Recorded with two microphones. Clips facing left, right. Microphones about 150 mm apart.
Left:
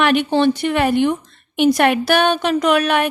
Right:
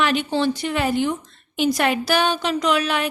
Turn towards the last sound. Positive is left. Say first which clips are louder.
# left 5 dB
turn(degrees=60)  # may be behind; listen again after turning